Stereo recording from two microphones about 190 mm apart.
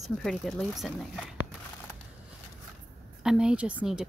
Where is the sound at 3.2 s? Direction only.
5° right (ahead or behind).